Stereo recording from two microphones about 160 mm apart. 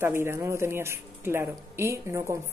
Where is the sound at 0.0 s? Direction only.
15° right (ahead or behind).